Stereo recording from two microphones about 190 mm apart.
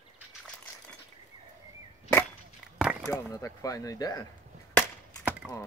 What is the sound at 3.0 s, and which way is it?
Speech, 15° left (ahead or behind).